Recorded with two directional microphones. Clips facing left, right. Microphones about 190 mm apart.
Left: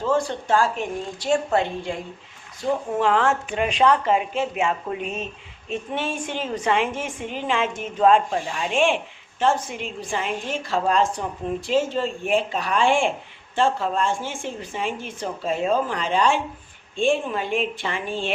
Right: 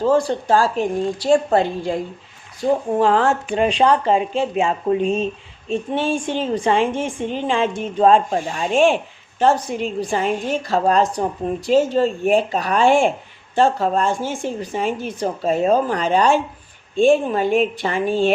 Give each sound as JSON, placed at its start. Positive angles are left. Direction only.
{"t": 0.0, "sound": "a woman's voice", "side_deg": -35}